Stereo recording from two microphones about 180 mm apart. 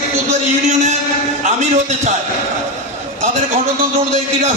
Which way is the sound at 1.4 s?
40° right (ahead or behind).